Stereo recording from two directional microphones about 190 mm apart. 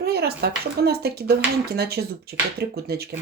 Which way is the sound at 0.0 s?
55° right (ahead or behind).